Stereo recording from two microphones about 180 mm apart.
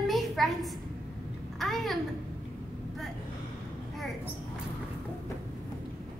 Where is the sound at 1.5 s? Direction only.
Centre (ahead or behind).